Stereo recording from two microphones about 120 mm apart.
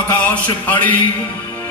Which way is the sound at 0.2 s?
15° left (ahead or behind).